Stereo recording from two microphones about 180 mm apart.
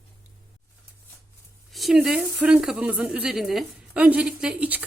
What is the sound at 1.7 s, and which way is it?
Speech, centre (ahead or behind).